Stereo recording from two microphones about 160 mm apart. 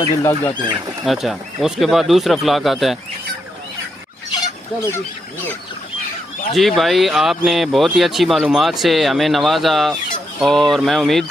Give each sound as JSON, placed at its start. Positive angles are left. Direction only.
{"t": 0.2, "sound": "speech", "side_deg": 20}
{"t": 1.0, "sound": "speech", "side_deg": 0}
{"t": 6.5, "sound": "speech", "side_deg": 0}